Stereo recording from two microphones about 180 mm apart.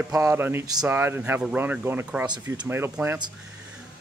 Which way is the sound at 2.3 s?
25° right (ahead or behind).